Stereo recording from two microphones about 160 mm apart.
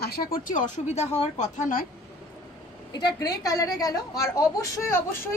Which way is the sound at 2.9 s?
25° left (ahead or behind).